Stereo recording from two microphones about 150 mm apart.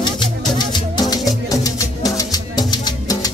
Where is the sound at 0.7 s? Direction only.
30° left (ahead or behind).